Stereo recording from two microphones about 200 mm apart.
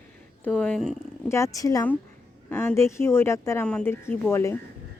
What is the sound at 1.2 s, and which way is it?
Speech, 15° left (ahead or behind).